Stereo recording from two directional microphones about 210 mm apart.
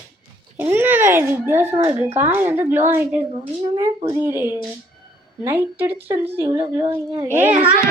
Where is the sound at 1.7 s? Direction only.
25° right (ahead or behind).